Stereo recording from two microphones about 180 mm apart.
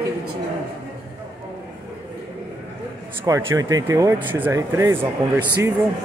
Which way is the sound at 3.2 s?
20° right (ahead or behind).